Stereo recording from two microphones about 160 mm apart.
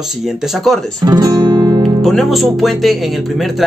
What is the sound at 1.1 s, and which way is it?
Guitar, 25° right (ahead or behind).